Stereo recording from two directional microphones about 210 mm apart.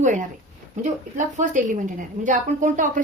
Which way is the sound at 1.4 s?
40° right (ahead or behind).